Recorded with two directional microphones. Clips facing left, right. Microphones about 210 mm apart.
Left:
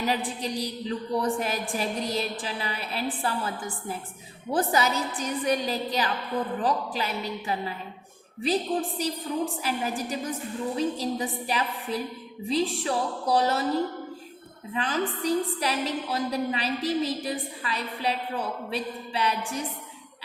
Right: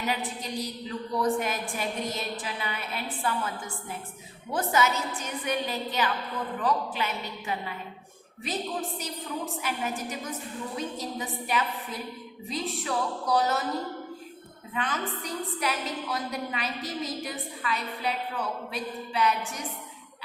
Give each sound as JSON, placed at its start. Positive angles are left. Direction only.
{"t": 0.0, "sound": "a woman's voice", "side_deg": 35}
{"t": 9.0, "sound": "a woman's voice", "side_deg": 35}
{"t": 14.7, "sound": "a woman's voice", "side_deg": 30}